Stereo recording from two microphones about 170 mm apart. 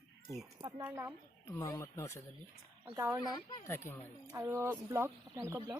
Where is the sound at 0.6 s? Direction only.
25° right (ahead or behind).